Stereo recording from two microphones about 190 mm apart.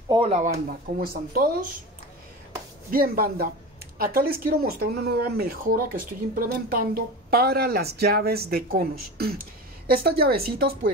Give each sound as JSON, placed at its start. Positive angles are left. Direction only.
{"t": 0.1, "sound": "speech", "side_deg": -30}
{"t": 2.9, "sound": "speech", "side_deg": -50}